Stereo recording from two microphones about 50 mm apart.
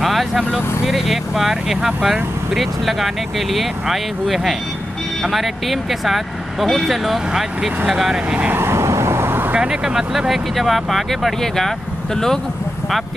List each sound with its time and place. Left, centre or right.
0.0 s speech: centre
8.5 s vehicle: right
9.6 s speech: centre